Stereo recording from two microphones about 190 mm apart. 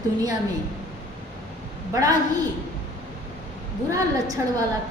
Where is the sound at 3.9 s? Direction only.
20° right (ahead or behind).